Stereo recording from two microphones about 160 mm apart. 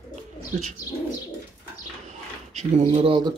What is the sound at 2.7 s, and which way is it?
Speech, 40° right (ahead or behind).